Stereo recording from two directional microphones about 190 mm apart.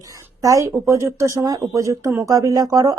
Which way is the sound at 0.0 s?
15° right (ahead or behind).